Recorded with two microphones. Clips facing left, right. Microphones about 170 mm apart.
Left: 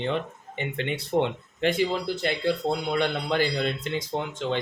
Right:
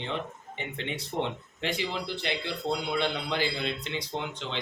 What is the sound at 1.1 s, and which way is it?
Speech, 60° left (ahead or behind).